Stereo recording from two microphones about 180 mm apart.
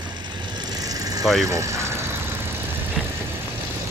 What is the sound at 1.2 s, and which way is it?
Speech, centre (ahead or behind).